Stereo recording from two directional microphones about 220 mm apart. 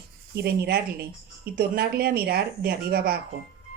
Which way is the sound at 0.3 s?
45° right (ahead or behind).